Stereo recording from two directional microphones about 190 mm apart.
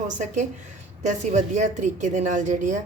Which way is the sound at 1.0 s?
40° right (ahead or behind).